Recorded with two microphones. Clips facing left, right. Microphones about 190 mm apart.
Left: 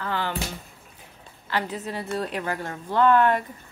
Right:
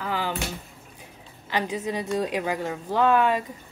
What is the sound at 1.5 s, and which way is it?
Speech, 15° right (ahead or behind).